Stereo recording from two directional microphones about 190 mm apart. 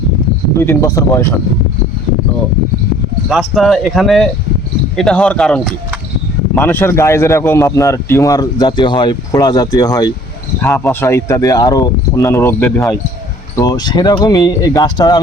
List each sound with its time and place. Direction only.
0.6 s a man's voice: 15° left (ahead or behind)
3.2 s a man's voice: centre (ahead or behind); by 10.1 s 20° left (ahead or behind)
10.6 s a man's voice: 10° left (ahead or behind)